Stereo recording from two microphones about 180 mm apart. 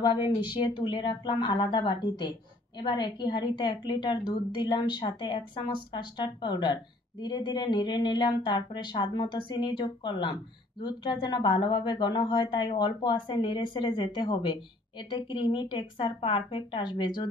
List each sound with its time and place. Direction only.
0.0 s speech: 25° left (ahead or behind)